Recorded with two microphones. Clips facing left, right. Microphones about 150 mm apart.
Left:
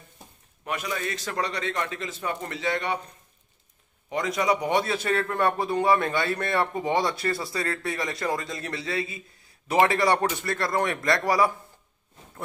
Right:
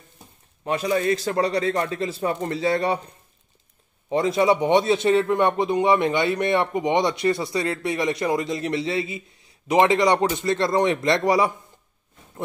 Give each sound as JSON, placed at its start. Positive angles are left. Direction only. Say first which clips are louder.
{"t": 0.7, "sound": "a man's voice", "louder": "right 9 dB", "side_deg": -35}
{"t": 4.1, "sound": "a man's voice", "louder": "right 6 dB", "side_deg": -30}